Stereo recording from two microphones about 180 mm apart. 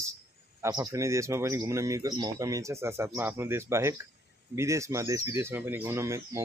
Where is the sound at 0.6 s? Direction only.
20° right (ahead or behind).